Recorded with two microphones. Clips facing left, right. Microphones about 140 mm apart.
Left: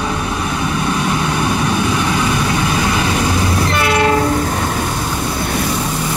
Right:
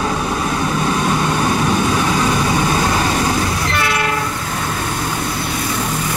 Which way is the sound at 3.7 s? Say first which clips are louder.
Left 5 dB; 25° left (ahead or behind).